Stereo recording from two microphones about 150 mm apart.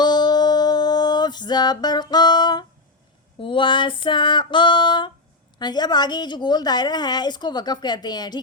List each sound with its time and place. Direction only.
0.0 s a sound: 30° left (ahead or behind)
3.4 s female singing: 35° left (ahead or behind)
5.5 s a woman's voice: 30° left (ahead or behind)